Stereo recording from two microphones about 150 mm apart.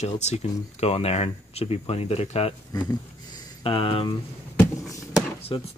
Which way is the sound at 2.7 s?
25° left (ahead or behind).